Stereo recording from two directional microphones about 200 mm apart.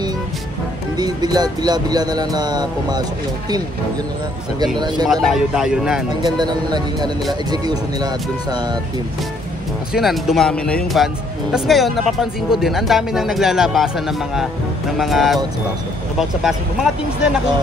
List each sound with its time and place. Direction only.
0.9 s speech: 20° right (ahead or behind)
4.7 s speech: 20° right (ahead or behind)
5.2 s speech: centre (ahead or behind)
6.2 s speech: 20° right (ahead or behind)
9.9 s speech: centre (ahead or behind)
15.0 s speech: centre (ahead or behind)